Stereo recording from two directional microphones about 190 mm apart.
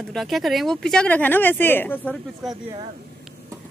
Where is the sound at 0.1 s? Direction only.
Centre (ahead or behind).